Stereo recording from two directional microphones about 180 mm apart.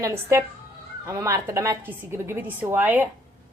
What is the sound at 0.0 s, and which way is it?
A woman's voice, 15° right (ahead or behind).